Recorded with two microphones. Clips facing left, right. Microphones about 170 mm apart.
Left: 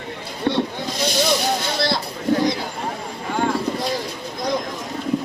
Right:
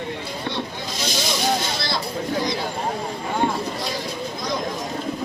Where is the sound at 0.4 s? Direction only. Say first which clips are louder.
Left 10 dB; 55° left (ahead or behind).